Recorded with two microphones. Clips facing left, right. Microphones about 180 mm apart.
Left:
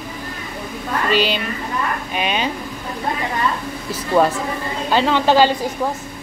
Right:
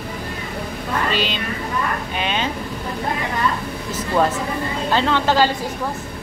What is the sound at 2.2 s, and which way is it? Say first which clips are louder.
Speech: left 2 dB; 15° left (ahead or behind).